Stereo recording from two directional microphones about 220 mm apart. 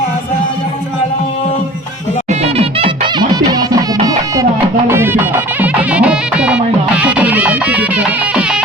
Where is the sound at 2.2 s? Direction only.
30° right (ahead or behind).